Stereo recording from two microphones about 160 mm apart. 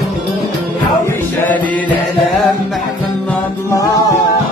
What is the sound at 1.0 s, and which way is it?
Chant, 10° left (ahead or behind).